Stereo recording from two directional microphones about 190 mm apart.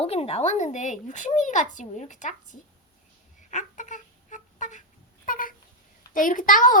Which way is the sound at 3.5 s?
40° left (ahead or behind).